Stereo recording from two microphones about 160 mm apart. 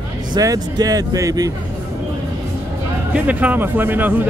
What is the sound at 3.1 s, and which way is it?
Speech, 10° right (ahead or behind).